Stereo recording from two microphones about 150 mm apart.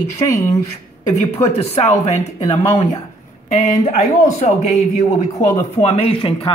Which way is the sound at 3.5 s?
50° left (ahead or behind).